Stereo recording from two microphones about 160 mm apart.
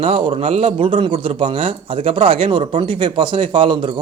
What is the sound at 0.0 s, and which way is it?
Speech, 35° right (ahead or behind).